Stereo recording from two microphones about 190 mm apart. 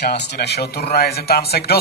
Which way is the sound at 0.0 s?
60° left (ahead or behind).